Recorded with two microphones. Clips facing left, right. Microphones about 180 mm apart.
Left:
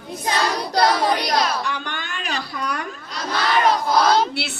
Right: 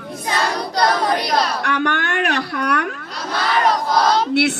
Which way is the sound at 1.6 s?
70° right (ahead or behind).